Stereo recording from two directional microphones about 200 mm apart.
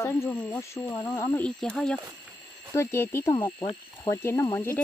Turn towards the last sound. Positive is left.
turn(degrees=15)  # may be behind; listen again after turning